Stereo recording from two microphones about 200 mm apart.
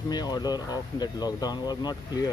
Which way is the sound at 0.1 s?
20° left (ahead or behind).